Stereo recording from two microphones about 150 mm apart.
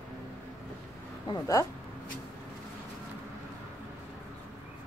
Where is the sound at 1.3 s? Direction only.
20° left (ahead or behind).